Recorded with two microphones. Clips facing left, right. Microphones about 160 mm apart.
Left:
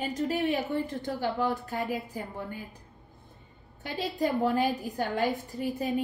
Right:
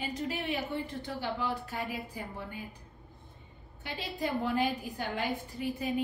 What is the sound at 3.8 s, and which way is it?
A woman's voice, 45° left (ahead or behind).